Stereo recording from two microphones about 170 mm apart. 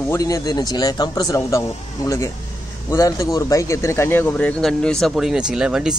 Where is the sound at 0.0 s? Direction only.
15° left (ahead or behind).